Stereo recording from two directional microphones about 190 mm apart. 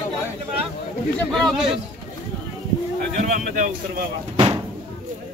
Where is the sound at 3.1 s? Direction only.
45° right (ahead or behind).